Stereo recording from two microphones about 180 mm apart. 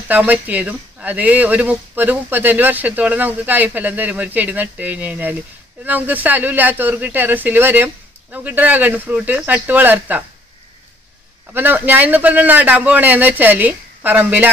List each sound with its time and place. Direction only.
0.1 s speech: 10° right (ahead or behind)
11.5 s speech: 10° right (ahead or behind)